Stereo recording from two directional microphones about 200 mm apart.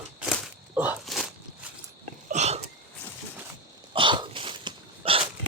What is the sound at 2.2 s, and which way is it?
Sneeze, 35° right (ahead or behind).